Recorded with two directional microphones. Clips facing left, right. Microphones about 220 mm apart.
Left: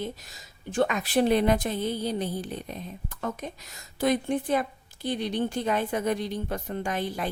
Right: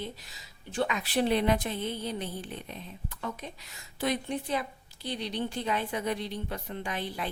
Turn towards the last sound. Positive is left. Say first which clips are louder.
# left 5 dB
turn(degrees=45)  # may be behind; listen again after turning